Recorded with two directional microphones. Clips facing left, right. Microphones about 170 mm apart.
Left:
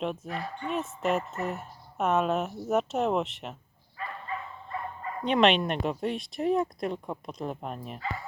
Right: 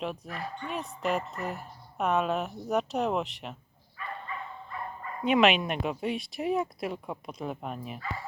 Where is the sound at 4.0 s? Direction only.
30° left (ahead or behind).